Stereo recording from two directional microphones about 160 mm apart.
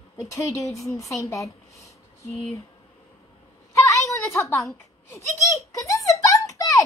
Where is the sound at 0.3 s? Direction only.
20° left (ahead or behind).